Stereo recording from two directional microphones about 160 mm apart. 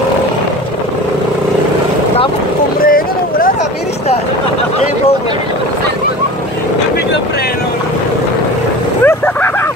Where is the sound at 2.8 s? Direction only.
65° left (ahead or behind).